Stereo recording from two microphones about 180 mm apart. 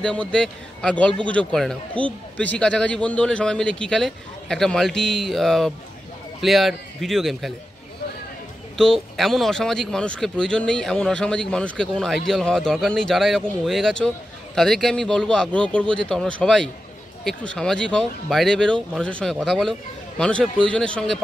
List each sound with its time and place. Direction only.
0.0 s a man's voice: 5° left (ahead or behind)
8.7 s speech: centre (ahead or behind)